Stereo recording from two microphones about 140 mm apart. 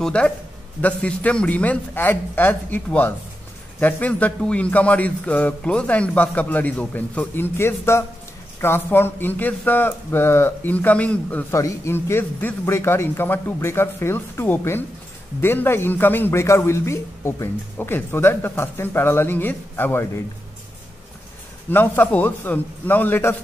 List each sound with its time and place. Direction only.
0.0 s a man's voice: 5° left (ahead or behind)
21.6 s a man's voice: 15° left (ahead or behind)